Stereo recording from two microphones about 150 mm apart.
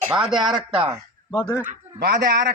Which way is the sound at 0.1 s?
5° right (ahead or behind).